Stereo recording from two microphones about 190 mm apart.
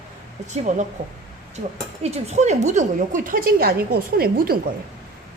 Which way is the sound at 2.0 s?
35° right (ahead or behind).